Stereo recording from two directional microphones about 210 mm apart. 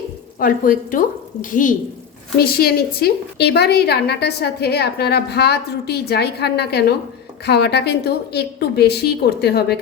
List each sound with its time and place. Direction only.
0.3 s a woman's voice: 40° left (ahead or behind)